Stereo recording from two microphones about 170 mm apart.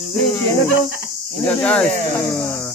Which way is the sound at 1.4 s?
10° left (ahead or behind).